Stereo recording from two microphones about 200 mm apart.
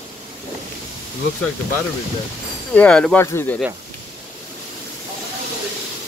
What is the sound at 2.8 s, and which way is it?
Speech, 5° left (ahead or behind).